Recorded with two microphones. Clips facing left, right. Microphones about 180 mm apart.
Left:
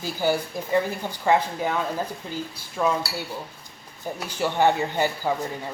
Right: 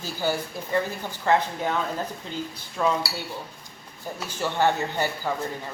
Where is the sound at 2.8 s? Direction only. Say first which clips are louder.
Left 1 dB; 5° left (ahead or behind).